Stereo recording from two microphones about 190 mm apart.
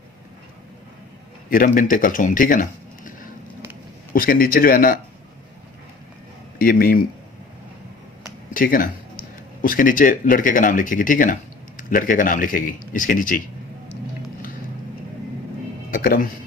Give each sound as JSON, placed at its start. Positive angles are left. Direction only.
{"t": 1.5, "sound": "speech", "side_deg": 45}
{"t": 6.6, "sound": "speech", "side_deg": 50}
{"t": 8.5, "sound": "speech", "side_deg": 45}
{"t": 15.9, "sound": "music", "side_deg": 50}